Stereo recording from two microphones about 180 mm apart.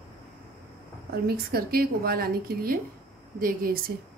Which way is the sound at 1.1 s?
60° right (ahead or behind).